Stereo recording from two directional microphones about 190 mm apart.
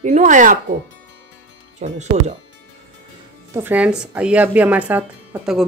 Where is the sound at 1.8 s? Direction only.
35° right (ahead or behind).